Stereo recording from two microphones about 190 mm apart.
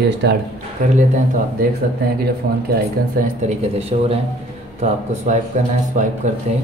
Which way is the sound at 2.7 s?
45° right (ahead or behind).